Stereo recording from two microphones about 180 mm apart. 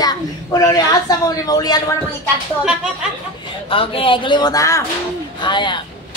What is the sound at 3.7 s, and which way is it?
A woman's voice, 30° left (ahead or behind).